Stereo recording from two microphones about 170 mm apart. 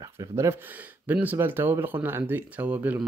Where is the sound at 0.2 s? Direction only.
15° right (ahead or behind).